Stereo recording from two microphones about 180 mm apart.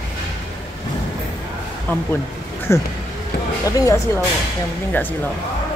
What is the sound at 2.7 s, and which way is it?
Speech, 15° left (ahead or behind).